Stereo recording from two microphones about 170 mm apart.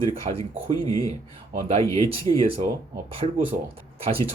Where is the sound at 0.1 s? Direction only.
35° right (ahead or behind).